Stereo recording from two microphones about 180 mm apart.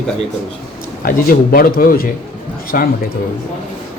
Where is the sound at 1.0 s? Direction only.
50° left (ahead or behind).